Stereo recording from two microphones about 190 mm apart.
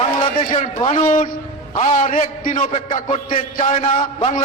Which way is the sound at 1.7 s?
40° left (ahead or behind).